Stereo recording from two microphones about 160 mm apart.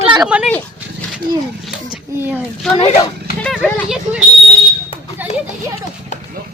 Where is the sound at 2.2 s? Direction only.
10° right (ahead or behind).